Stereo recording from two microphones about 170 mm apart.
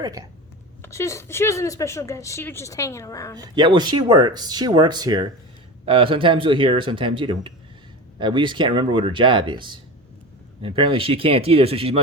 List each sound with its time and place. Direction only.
0.8 s speech: 15° left (ahead or behind)
3.3 s speech: 25° right (ahead or behind)